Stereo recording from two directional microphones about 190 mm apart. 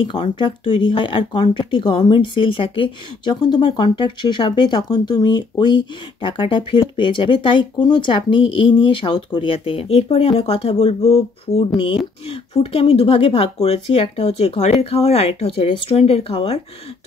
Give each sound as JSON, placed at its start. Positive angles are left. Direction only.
{"t": 0.0, "sound": "speech", "side_deg": 25}